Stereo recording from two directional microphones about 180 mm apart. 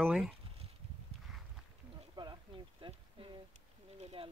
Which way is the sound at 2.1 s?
25° right (ahead or behind).